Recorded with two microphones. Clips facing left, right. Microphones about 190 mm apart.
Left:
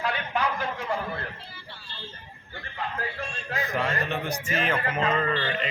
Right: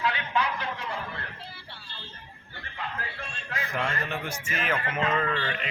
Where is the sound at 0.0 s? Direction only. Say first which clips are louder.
Even; 45° left (ahead or behind).